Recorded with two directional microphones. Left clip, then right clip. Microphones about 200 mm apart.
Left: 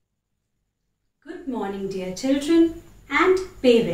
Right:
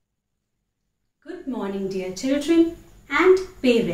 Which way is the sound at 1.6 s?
15° right (ahead or behind).